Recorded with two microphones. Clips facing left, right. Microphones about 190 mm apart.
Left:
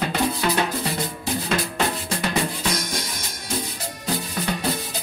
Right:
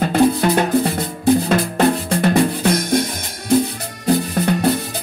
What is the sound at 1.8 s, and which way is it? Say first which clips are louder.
Music: right 9 dB; 50° right (ahead or behind).